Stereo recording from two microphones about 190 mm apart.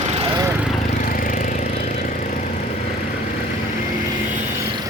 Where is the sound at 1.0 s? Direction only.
45° left (ahead or behind).